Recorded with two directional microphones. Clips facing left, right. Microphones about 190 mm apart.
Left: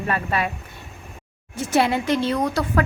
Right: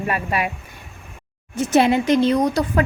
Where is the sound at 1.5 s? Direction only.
20° right (ahead or behind).